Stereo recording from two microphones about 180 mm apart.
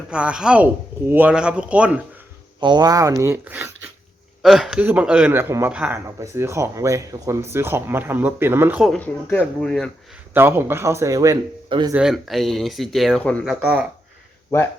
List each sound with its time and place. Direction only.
0.1 s speech: 5° right (ahead or behind)
2.6 s a man's voice: 25° right (ahead or behind)
8.9 s speech: 10° left (ahead or behind)
10.3 s a man's voice: 10° right (ahead or behind)
11.9 s speech: centre (ahead or behind)
13.4 s speech: 5° right (ahead or behind)